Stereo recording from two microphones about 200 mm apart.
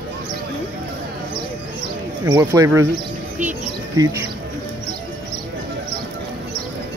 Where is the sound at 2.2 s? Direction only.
15° right (ahead or behind).